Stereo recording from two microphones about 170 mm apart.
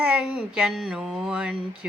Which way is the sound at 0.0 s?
5° right (ahead or behind).